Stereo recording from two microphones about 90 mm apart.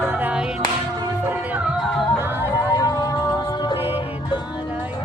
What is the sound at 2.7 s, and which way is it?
Music, 45° left (ahead or behind).